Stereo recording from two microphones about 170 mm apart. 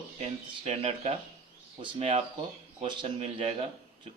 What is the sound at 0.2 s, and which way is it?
A man's voice, 35° right (ahead or behind).